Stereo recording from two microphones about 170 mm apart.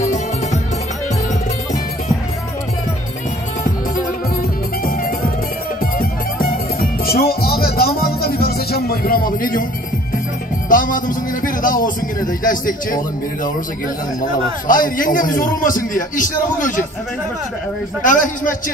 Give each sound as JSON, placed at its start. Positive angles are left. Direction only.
{"t": 0.0, "sound": "music", "side_deg": 45}
{"t": 3.6, "sound": "music", "side_deg": 55}
{"t": 10.7, "sound": "a man's voice", "side_deg": 55}
{"t": 18.0, "sound": "a man's voice", "side_deg": 50}